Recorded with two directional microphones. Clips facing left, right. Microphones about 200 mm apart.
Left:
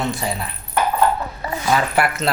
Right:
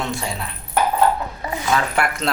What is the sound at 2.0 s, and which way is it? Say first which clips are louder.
Speech: left 2 dB; 5° left (ahead or behind).